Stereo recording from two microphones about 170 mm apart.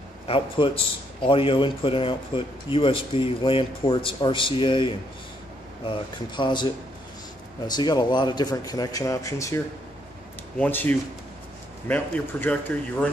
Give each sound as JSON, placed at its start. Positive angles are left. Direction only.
{"t": 0.3, "sound": "a man's voice", "side_deg": 30}
{"t": 10.6, "sound": "speech", "side_deg": 10}